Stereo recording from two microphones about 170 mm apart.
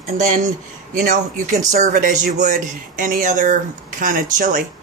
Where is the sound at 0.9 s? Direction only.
55° right (ahead or behind).